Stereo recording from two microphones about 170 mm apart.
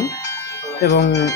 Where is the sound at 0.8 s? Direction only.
80° left.